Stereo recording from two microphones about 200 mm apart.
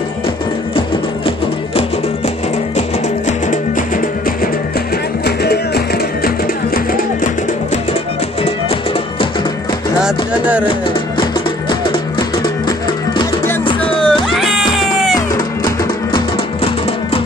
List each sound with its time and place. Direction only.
3.3 s music: 40° left (ahead or behind)
5.2 s music: 55° left (ahead or behind)
10.0 s music: 5° right (ahead or behind)
13.2 s music: 20° left (ahead or behind)
13.8 s music: 5° left (ahead or behind)
15.3 s music: 20° left (ahead or behind)